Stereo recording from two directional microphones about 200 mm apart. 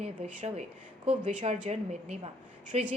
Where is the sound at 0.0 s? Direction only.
30° right (ahead or behind).